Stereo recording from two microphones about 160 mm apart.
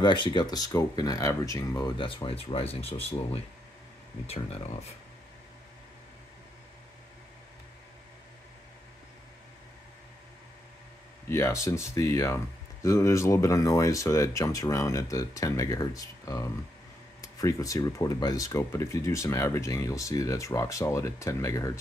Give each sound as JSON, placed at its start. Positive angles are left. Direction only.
{"t": 0.0, "sound": "speech", "side_deg": 30}
{"t": 4.3, "sound": "speech", "side_deg": 40}
{"t": 11.2, "sound": "speech", "side_deg": 15}